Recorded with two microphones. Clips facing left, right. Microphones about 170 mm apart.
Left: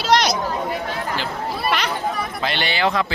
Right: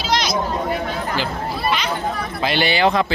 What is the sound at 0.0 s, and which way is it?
Chatter, 65° left (ahead or behind).